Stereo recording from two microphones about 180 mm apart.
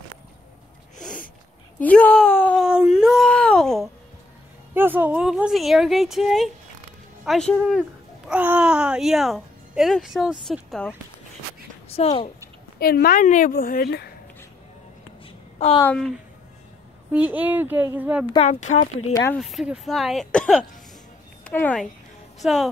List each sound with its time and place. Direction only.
1.8 s a sound: 10° left (ahead or behind)
2.6 s a sound: 5° right (ahead or behind)
4.7 s speech: 10° right (ahead or behind)
11.9 s speech: 35° left (ahead or behind)
12.7 s a woman's voice: 60° left (ahead or behind)
15.8 s speech: 5° left (ahead or behind)
17.1 s speech: 10° right (ahead or behind)
18.3 s speech: 35° left (ahead or behind)
19.3 s speech: centre (ahead or behind)